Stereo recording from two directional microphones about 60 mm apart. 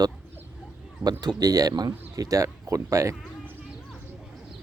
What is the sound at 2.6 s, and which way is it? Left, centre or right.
Speech, right.